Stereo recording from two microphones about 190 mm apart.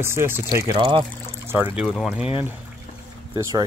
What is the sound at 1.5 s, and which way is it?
Speech, 10° right (ahead or behind).